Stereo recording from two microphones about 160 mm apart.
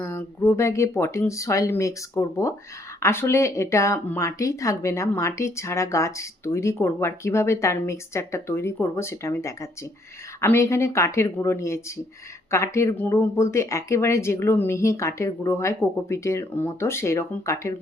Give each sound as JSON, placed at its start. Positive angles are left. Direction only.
{"t": 0.0, "sound": "speech", "side_deg": 15}